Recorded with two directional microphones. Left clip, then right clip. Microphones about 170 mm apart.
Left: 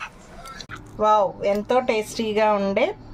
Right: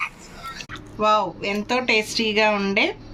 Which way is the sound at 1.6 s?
60° left (ahead or behind).